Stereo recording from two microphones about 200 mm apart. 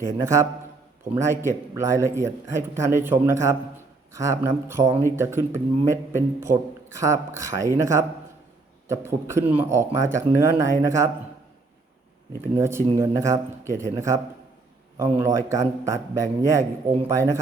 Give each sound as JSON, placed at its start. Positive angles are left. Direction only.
{"t": 0.0, "sound": "a man's voice", "side_deg": -15}
{"t": 12.5, "sound": "a man's voice", "side_deg": -15}